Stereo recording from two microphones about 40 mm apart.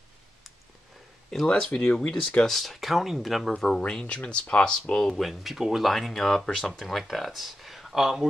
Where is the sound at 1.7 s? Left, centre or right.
Left.